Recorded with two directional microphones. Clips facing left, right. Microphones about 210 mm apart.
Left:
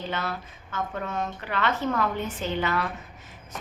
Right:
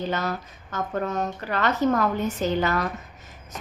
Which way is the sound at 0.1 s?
40° right (ahead or behind).